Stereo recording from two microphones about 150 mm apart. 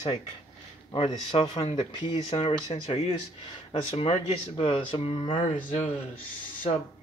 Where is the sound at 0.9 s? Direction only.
35° left (ahead or behind).